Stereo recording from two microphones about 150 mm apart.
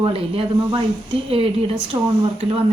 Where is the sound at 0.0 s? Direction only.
35° right (ahead or behind).